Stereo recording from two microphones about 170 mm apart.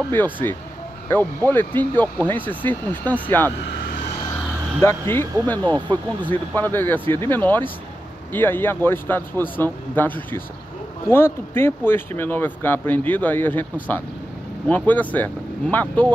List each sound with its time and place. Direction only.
0.1 s speech: 10° left (ahead or behind)
4.8 s speech: 15° left (ahead or behind)
14.7 s speech: 10° left (ahead or behind)